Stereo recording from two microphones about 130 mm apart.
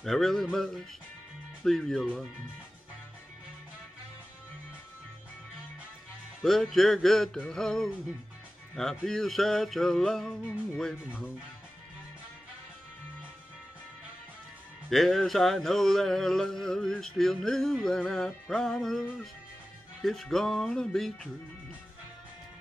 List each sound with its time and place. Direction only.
0.0 s music: centre (ahead or behind)
6.4 s music: 5° left (ahead or behind)
14.9 s music: centre (ahead or behind)